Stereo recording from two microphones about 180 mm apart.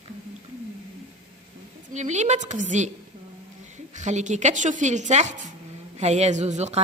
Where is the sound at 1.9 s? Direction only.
40° right (ahead or behind).